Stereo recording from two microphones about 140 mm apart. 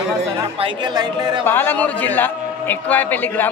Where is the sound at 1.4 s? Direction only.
15° left (ahead or behind).